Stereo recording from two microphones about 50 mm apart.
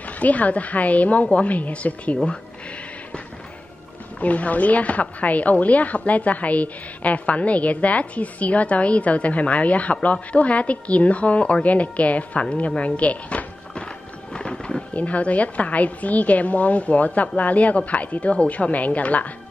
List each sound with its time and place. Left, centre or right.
0.2 s a woman's voice: left
4.2 s a woman's voice: left